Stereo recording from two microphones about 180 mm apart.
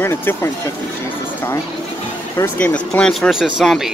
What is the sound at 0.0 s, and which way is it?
Speech, 10° left (ahead or behind).